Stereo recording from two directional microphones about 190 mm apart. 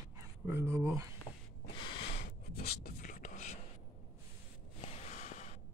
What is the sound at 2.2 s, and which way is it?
Whispering, 55° left (ahead or behind).